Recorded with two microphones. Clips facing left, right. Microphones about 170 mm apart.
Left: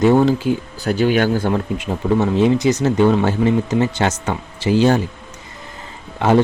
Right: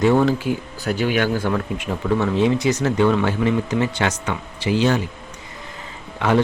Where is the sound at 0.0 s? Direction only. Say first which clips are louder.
Left 3 dB; 25° left (ahead or behind).